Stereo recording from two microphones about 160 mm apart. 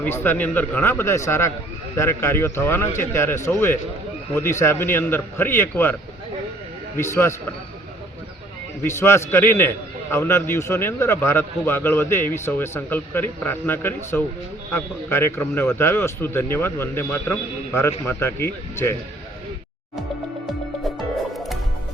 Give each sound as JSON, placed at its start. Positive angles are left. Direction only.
{"t": 0.0, "sound": "a man's voice", "side_deg": 15}
{"t": 8.8, "sound": "a man's voice", "side_deg": 15}